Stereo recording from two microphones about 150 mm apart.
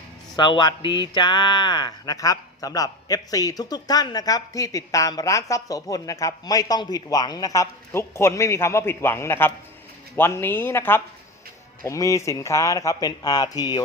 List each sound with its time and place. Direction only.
0.3 s speech: 30° left (ahead or behind)